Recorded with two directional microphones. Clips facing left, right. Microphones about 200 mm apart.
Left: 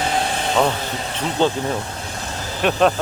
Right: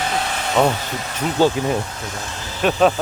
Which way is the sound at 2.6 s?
Centre (ahead or behind).